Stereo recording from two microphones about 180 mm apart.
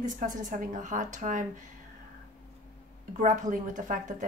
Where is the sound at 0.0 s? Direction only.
45° right (ahead or behind).